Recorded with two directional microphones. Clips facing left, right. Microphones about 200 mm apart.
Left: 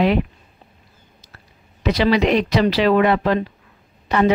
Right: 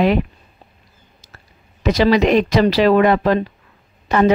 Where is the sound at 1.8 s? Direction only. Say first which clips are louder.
Right 3 dB; 45° right (ahead or behind).